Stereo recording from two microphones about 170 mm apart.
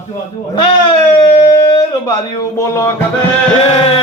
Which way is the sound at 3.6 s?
35° left (ahead or behind).